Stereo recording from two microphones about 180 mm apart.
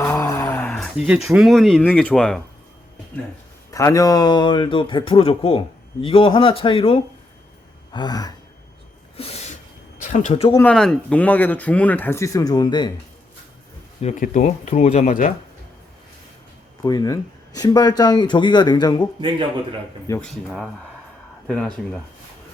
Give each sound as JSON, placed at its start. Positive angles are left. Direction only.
{"t": 0.0, "sound": "a sound", "side_deg": 15}
{"t": 3.7, "sound": "a man's voice", "side_deg": 20}
{"t": 9.1, "sound": "sneeze", "side_deg": 35}
{"t": 10.0, "sound": "speech", "side_deg": 45}
{"t": 10.6, "sound": "speech", "side_deg": 5}
{"t": 14.0, "sound": "speech", "side_deg": 40}
{"t": 16.8, "sound": "a man's voice", "side_deg": 20}
{"t": 20.2, "sound": "speech", "side_deg": 5}